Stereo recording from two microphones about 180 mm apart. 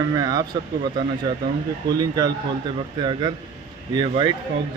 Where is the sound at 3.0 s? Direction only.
25° right (ahead or behind).